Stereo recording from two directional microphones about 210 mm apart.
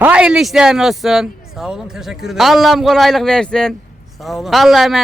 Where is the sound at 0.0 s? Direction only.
5° right (ahead or behind).